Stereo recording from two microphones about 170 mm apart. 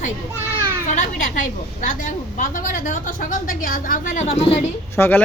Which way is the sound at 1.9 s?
50° left (ahead or behind).